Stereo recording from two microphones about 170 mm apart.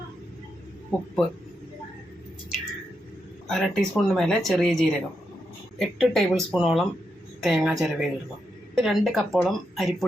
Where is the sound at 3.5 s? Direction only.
Centre (ahead or behind).